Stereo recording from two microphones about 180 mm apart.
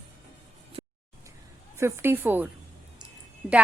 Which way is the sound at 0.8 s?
30° right (ahead or behind).